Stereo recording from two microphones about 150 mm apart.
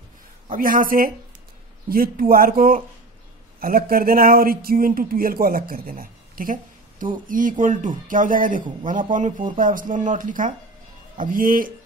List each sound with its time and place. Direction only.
0.5 s a man's voice: 65° right (ahead or behind)